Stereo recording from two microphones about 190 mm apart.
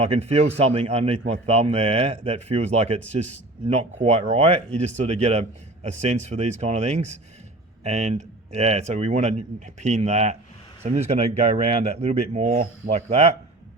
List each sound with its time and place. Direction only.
0.0 s speech: 30° right (ahead or behind)